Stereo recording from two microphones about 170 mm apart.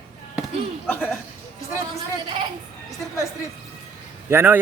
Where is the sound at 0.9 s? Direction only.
10° left (ahead or behind).